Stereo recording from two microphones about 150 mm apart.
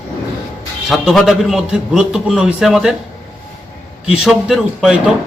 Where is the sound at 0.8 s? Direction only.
Centre (ahead or behind).